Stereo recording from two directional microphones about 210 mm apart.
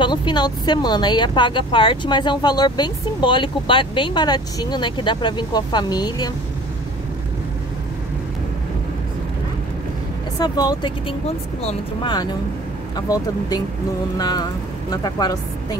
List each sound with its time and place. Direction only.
0.0 s speech: 20° left (ahead or behind)
10.4 s speech: 20° left (ahead or behind)